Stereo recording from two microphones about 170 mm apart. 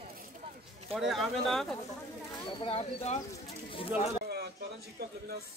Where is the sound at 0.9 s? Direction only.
Centre (ahead or behind).